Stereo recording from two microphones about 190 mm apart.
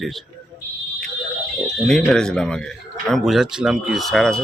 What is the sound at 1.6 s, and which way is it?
Speech, centre (ahead or behind).